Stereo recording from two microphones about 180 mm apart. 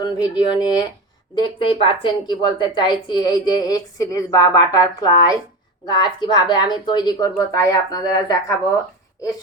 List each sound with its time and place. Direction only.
0.0 s a woman's voice: 20° left (ahead or behind)